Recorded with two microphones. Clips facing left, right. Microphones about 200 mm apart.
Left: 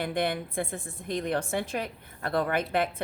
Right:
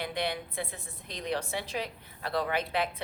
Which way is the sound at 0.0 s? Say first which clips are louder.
Left 4 dB; 50° left (ahead or behind).